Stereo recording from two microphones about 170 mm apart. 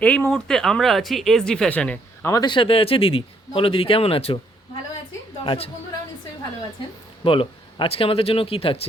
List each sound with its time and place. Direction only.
0.0 s speech: 5° left (ahead or behind)
2.3 s speech: 25° left (ahead or behind)
5.4 s speech: 30° left (ahead or behind)
7.3 s speech: 30° left (ahead or behind)